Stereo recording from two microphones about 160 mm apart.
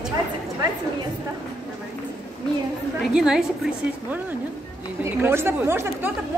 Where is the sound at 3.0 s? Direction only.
5° right (ahead or behind).